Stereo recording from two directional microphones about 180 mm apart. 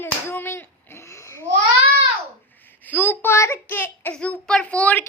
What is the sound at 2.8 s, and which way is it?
A child's voice, 10° left (ahead or behind).